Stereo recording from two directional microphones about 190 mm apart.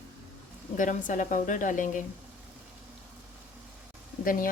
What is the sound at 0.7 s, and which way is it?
Speech, 40° left (ahead or behind).